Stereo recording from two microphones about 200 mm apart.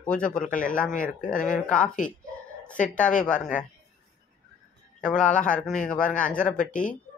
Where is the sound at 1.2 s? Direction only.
40° left (ahead or behind).